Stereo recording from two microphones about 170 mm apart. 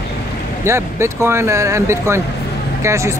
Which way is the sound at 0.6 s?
15° right (ahead or behind).